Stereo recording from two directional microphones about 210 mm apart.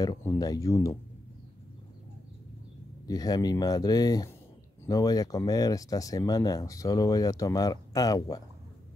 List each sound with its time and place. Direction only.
0.0 s speech: 15° left (ahead or behind)
3.1 s speech: 20° left (ahead or behind)